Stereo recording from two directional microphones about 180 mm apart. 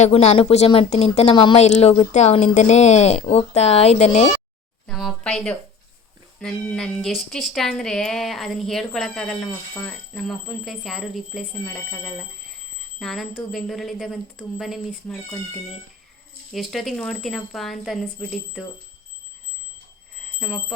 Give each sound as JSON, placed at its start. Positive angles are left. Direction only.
{"t": 0.0, "sound": "speech", "side_deg": 35}
{"t": 4.9, "sound": "speech", "side_deg": 0}
{"t": 20.4, "sound": "speech", "side_deg": 0}